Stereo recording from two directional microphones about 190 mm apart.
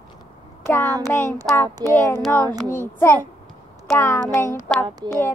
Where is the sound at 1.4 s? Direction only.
10° left (ahead or behind).